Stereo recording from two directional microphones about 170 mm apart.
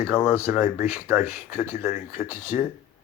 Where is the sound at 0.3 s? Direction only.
15° right (ahead or behind).